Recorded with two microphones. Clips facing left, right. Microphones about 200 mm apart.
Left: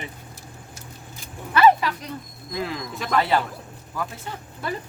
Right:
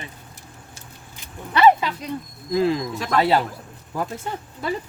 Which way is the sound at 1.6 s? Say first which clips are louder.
Right 1 dB; 20° right (ahead or behind).